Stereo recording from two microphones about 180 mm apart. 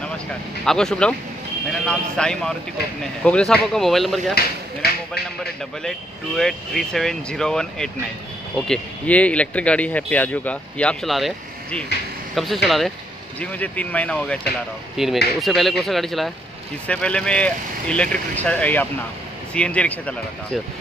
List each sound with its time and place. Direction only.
0.7 s speech: 5° left (ahead or behind)
4.4 s a sound: 60° left (ahead or behind)
5.9 s speech: centre (ahead or behind)